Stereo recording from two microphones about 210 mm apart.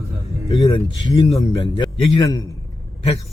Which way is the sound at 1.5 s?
20° left (ahead or behind).